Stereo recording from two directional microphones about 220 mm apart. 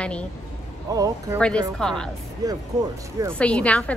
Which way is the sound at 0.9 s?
15° right (ahead or behind).